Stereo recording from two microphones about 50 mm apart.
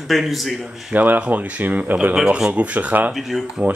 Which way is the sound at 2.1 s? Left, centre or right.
Centre.